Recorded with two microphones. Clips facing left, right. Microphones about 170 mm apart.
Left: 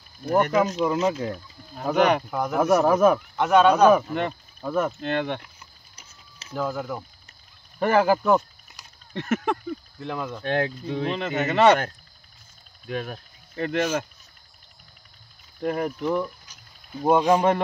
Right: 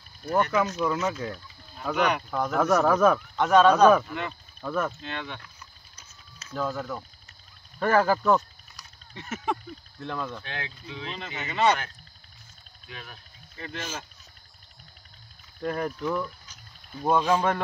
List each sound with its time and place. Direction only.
0.2 s speech: 30° left (ahead or behind)
1.8 s speech: 45° left (ahead or behind)
2.3 s speech: 10° left (ahead or behind)
3.3 s speech: 10° left (ahead or behind)
5.0 s speech: 60° left (ahead or behind)
5.4 s a sound: 10° left (ahead or behind)
6.5 s speech: 10° left (ahead or behind)
9.1 s a sound: 65° left (ahead or behind)
9.9 s speech: 5° left (ahead or behind)
10.4 s speech: 45° left (ahead or behind)
12.8 s speech: 50° left (ahead or behind)
15.6 s speech: 20° left (ahead or behind)